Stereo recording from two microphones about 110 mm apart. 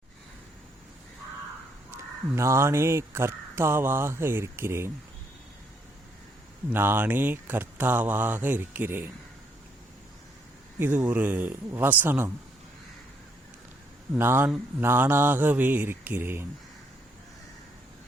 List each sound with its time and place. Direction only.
2.3 s speech: 25° right (ahead or behind)
6.7 s speech: 20° right (ahead or behind)
10.8 s speech: 20° right (ahead or behind)
14.2 s speech: 20° right (ahead or behind)